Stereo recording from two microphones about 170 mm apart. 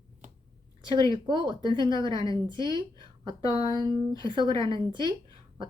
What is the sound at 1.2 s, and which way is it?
Speech, 25° right (ahead or behind).